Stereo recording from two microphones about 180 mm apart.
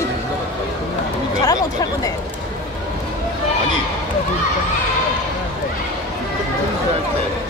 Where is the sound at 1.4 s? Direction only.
20° left (ahead or behind).